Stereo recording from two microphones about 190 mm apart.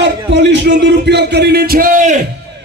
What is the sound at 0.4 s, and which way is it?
A man's voice, 65° right (ahead or behind).